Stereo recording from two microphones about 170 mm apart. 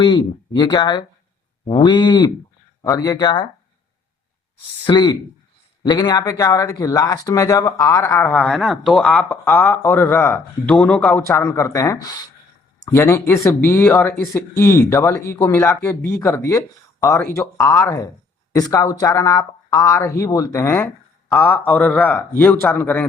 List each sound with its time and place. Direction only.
0.0 s speech: 25° left (ahead or behind)
4.9 s speech: 25° left (ahead or behind)
10.8 s speech: 5° left (ahead or behind)
11.3 s speech: 15° left (ahead or behind)